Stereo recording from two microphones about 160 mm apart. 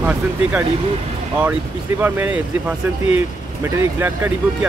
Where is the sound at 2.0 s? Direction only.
10° right (ahead or behind).